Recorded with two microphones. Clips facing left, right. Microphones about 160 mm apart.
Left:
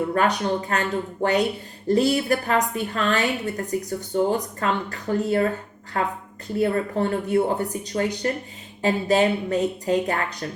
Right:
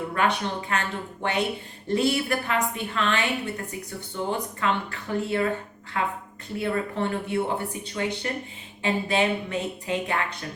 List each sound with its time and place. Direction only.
0.1 s speech: 40° left (ahead or behind)